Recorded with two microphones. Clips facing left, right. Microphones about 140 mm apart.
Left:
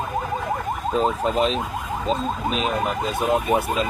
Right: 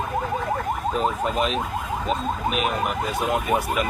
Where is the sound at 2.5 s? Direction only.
25° left (ahead or behind).